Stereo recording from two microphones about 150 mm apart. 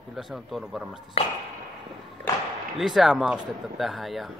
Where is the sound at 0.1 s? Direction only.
Centre (ahead or behind).